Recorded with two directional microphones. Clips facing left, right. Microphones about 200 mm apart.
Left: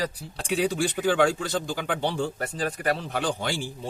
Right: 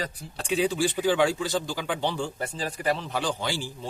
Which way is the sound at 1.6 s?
55° left (ahead or behind).